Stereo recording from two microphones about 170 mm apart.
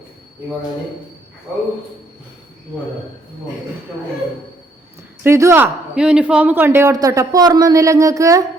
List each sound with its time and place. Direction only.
5.2 s speech: 15° right (ahead or behind)